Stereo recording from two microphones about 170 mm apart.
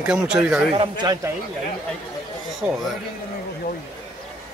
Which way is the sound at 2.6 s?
10° right (ahead or behind).